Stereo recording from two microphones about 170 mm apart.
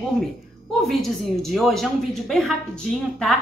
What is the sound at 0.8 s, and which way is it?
Speech, centre (ahead or behind).